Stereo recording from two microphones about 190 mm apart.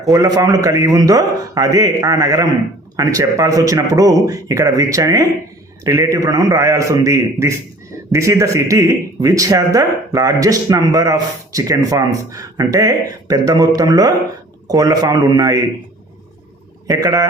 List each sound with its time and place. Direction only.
0.1 s a man's voice: 20° right (ahead or behind)
16.8 s a man's voice: 15° right (ahead or behind)